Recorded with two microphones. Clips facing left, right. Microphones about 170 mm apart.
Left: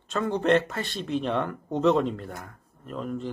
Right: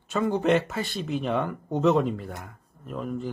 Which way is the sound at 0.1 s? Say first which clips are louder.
Even; 5° right (ahead or behind).